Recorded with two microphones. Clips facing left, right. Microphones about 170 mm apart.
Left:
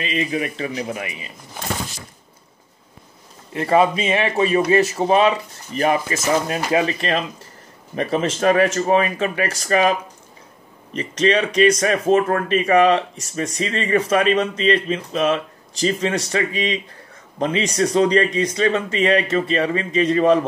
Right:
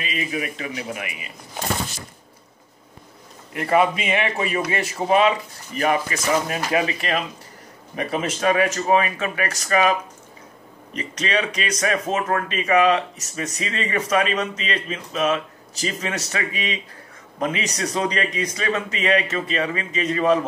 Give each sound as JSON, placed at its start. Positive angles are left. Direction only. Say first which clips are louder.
{"t": 0.0, "sound": "speech", "louder": "left 4 dB", "side_deg": 30}
{"t": 3.5, "sound": "a man's voice", "louder": "left 3 dB", "side_deg": 30}
{"t": 11.0, "sound": "speech", "louder": "left 6 dB", "side_deg": 30}